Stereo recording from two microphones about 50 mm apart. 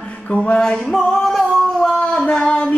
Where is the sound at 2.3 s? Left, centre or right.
Left.